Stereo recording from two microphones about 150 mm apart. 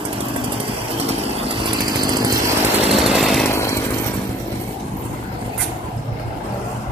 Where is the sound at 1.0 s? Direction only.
40° right (ahead or behind).